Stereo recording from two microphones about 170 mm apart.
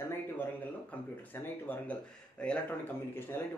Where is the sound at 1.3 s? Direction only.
10° left (ahead or behind).